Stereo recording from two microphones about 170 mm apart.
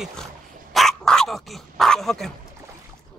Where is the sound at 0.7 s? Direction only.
5° left (ahead or behind).